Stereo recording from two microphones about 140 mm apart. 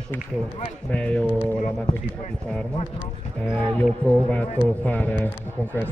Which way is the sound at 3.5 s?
10° left (ahead or behind).